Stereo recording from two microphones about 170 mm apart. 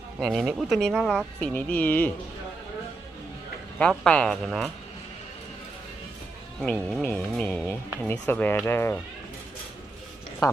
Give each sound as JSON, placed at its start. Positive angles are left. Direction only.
{"t": 0.2, "sound": "speech", "side_deg": 0}
{"t": 3.8, "sound": "speech", "side_deg": 5}
{"t": 7.0, "sound": "speech", "side_deg": 10}
{"t": 10.4, "sound": "speech", "side_deg": 20}